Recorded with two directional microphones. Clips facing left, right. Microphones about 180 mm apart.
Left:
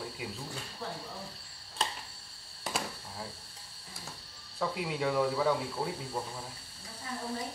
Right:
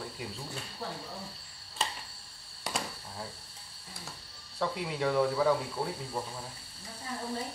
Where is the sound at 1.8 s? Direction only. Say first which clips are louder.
Even; 5° right (ahead or behind).